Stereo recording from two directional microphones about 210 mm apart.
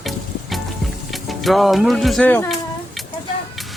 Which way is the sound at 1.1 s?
Centre (ahead or behind).